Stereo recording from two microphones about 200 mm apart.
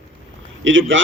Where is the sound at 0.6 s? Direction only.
70° right (ahead or behind).